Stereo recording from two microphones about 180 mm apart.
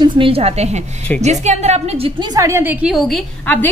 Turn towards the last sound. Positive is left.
turn(degrees=0)  # may be behind; listen again after turning